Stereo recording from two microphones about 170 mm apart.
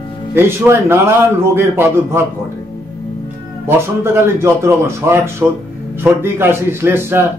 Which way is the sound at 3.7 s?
15° right (ahead or behind).